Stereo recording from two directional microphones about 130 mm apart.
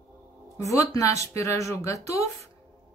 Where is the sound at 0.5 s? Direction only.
25° left (ahead or behind).